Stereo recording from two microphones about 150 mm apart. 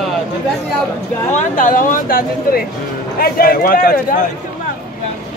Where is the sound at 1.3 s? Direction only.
60° left (ahead or behind).